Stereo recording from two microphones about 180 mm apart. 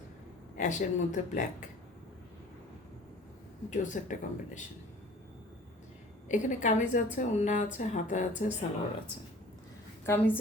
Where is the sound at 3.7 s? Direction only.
45° left (ahead or behind).